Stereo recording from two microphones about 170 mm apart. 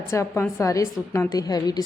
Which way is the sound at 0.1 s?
15° left (ahead or behind).